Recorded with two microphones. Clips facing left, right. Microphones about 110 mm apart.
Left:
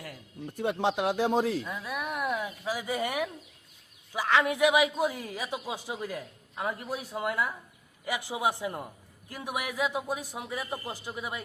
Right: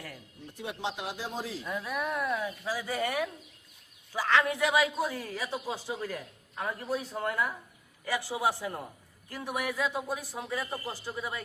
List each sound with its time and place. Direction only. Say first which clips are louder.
0.5 s speech: left 8 dB; 55° left (ahead or behind)
1.7 s speech: right 2 dB; 5° left (ahead or behind)